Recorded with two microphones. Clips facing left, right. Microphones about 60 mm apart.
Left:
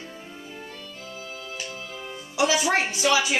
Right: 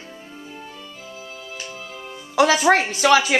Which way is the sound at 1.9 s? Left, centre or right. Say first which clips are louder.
Right 1 dB; centre.